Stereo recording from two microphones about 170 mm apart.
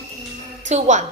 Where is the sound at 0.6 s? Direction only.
45° right (ahead or behind).